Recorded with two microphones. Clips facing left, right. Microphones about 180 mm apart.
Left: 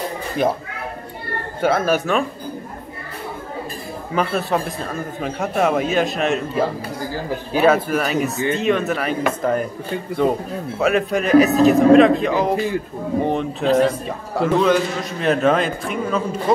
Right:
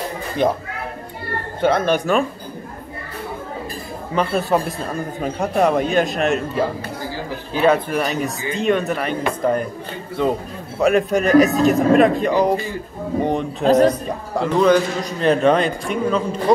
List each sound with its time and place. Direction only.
1.6 s speech: 5° left (ahead or behind)
4.1 s speech: centre (ahead or behind)
7.5 s speech: 5° left (ahead or behind)
10.8 s speech: centre (ahead or behind)
13.7 s speech: 40° right (ahead or behind)
14.3 s speech: centre (ahead or behind)